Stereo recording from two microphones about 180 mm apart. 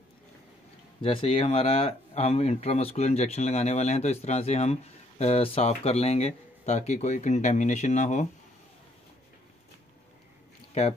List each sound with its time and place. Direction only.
1.0 s speech: 30° left (ahead or behind)
10.7 s speech: 35° left (ahead or behind)